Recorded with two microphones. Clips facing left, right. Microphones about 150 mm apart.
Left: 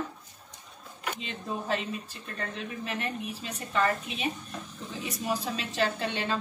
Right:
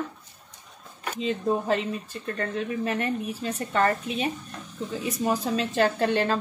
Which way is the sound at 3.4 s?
45° right (ahead or behind).